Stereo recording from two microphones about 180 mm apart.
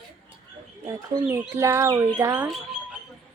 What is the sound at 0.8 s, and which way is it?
Speech, 15° right (ahead or behind).